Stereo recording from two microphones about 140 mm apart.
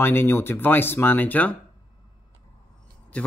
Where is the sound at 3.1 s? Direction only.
10° left (ahead or behind).